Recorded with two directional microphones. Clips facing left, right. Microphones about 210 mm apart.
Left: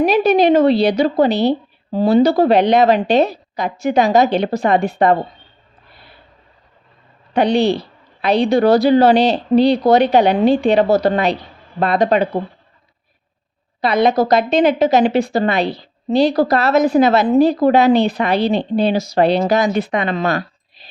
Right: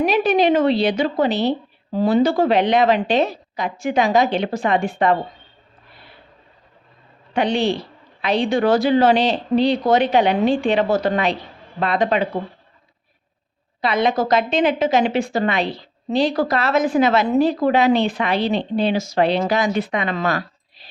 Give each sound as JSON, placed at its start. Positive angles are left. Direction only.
{"t": 0.0, "sound": "a woman's voice", "side_deg": 35}
{"t": 7.3, "sound": "a woman's voice", "side_deg": 40}
{"t": 13.8, "sound": "a woman's voice", "side_deg": 40}
{"t": 20.1, "sound": "speech", "side_deg": 25}